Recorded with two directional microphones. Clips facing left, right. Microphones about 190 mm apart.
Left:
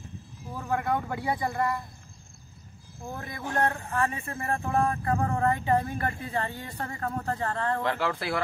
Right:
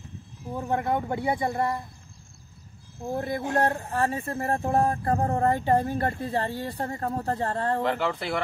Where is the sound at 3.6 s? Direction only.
35° right (ahead or behind).